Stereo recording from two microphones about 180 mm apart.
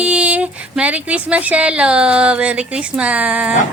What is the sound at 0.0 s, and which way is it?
Speech, 5° right (ahead or behind).